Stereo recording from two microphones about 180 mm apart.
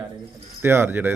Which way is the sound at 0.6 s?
10° right (ahead or behind).